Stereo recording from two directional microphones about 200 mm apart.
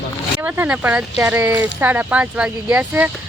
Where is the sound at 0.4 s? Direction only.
10° right (ahead or behind).